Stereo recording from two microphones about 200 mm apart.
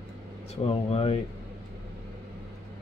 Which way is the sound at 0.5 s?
30° left (ahead or behind).